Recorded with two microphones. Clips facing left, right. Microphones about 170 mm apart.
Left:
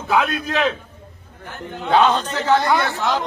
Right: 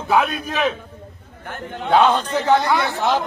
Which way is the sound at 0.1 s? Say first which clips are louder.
Even; 10° right (ahead or behind).